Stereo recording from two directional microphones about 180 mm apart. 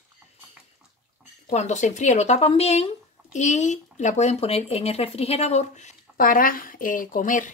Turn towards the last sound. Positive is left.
turn(degrees=50)  # may be behind; listen again after turning